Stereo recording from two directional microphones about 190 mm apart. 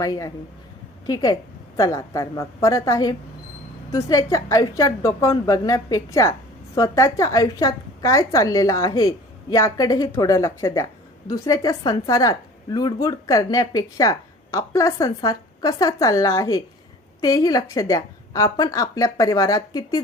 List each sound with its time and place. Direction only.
0.0 s a woman's voice: 15° left (ahead or behind)